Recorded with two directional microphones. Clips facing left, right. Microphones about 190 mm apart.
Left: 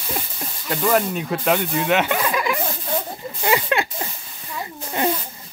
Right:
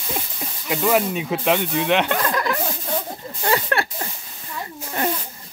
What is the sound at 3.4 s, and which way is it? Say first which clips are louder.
Snake: left 1 dB; 15° left (ahead or behind).